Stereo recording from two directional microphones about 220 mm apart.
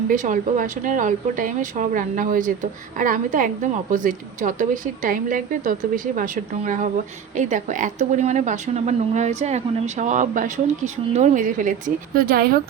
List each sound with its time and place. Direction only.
0.1 s speech: 35° right (ahead or behind)